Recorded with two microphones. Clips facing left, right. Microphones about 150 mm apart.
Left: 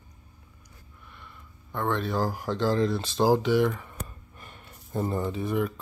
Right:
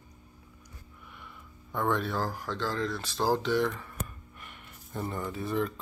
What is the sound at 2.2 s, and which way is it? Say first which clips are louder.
Speech: left 6 dB; 15° left (ahead or behind).